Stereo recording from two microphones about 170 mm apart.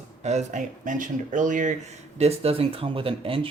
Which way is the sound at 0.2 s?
40° right (ahead or behind).